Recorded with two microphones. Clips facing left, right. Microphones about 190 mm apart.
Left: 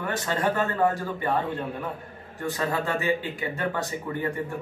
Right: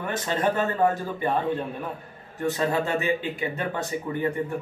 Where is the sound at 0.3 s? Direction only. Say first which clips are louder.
Right 2 dB; 20° right (ahead or behind).